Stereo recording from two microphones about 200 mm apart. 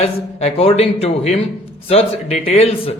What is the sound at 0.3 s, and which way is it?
A man's voice, 30° left (ahead or behind).